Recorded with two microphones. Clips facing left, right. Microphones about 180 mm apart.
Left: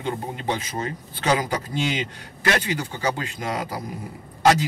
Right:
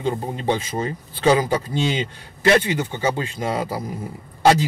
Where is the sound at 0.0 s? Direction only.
30° right (ahead or behind).